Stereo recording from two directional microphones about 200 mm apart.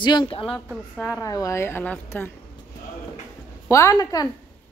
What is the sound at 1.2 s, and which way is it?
A woman's voice, 15° left (ahead or behind).